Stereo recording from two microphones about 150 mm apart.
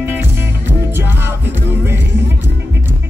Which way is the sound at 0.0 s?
15° right (ahead or behind).